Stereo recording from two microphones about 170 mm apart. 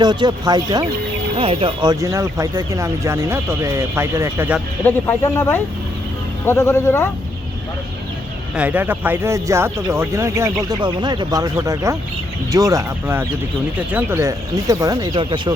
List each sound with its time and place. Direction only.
0.0 s speech: 25° right (ahead or behind)
4.8 s speech: 10° left (ahead or behind)
8.5 s speech: 10° right (ahead or behind); by 15.5 s 30° right (ahead or behind)